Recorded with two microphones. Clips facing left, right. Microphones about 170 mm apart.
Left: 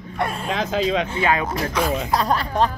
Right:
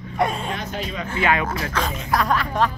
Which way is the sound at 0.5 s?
90° left.